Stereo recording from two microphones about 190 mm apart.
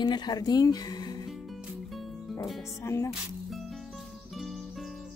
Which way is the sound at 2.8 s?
15° left (ahead or behind).